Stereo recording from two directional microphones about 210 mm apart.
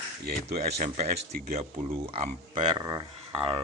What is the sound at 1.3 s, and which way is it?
Speech, 45° right (ahead or behind).